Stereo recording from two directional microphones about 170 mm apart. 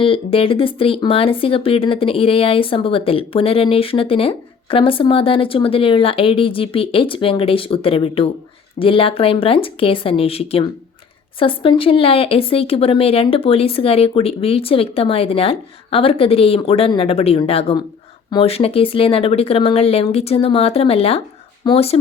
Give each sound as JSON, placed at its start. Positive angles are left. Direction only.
{"t": 0.0, "sound": "speech", "side_deg": 30}